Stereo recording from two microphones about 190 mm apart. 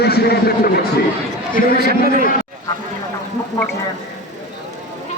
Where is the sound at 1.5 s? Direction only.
45° left (ahead or behind).